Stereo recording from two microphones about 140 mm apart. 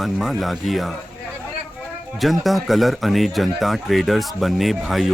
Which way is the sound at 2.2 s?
Centre (ahead or behind).